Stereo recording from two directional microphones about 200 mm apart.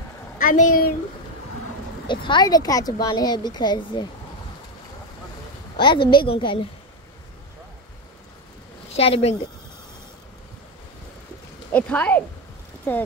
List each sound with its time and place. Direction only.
0.4 s speech: 40° left (ahead or behind)
2.0 s speech: 25° left (ahead or behind)
5.8 s speech: 25° left (ahead or behind)
8.9 s speech: 30° left (ahead or behind)
11.7 s speech: 5° left (ahead or behind)